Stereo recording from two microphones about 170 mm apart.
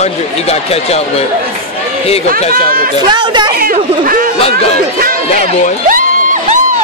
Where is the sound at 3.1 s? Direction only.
25° right (ahead or behind).